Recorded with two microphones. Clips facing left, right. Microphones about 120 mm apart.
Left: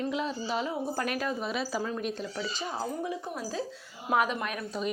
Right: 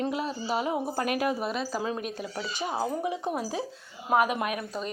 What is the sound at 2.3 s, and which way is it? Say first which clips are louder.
Speech: right 3 dB; 20° right (ahead or behind).